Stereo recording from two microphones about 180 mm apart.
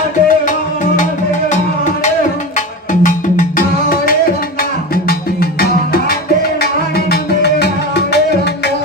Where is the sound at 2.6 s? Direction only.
45° left (ahead or behind).